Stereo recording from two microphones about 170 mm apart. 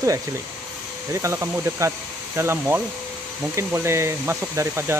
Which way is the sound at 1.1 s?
15° right (ahead or behind).